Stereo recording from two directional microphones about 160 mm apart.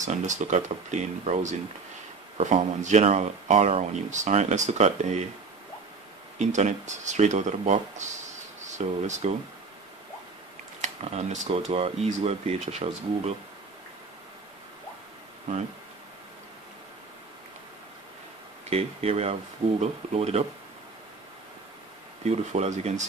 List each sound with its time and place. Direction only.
0.0 s speech: 50° right (ahead or behind)
6.3 s speech: 50° right (ahead or behind)
10.8 s speech: 45° right (ahead or behind)
18.7 s speech: 40° right (ahead or behind)
22.2 s speech: 45° right (ahead or behind)